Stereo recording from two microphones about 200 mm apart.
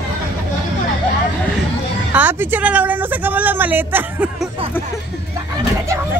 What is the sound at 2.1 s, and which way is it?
Speech, 10° right (ahead or behind).